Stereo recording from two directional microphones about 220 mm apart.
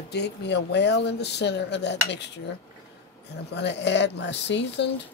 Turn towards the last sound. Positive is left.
turn(degrees=50)  # may be behind; listen again after turning